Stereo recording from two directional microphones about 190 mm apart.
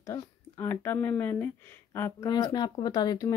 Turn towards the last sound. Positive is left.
turn(degrees=20)  # may be behind; listen again after turning